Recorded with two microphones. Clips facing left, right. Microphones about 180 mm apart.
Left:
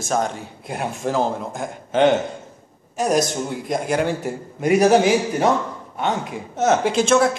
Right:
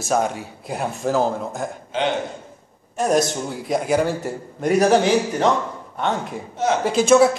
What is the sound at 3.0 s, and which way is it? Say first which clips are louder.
A man's voice: even; centre (ahead or behind).